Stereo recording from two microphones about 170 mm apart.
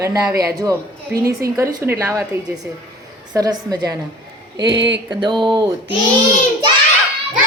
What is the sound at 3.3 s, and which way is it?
Speech, 20° right (ahead or behind).